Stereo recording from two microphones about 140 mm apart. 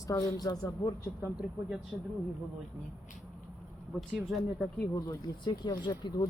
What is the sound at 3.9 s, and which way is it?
Speech, centre (ahead or behind).